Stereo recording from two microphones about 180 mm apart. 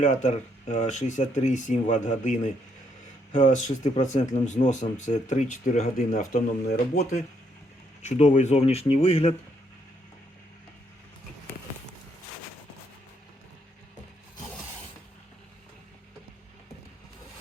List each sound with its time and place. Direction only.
0.0 s speech: 40° left (ahead or behind)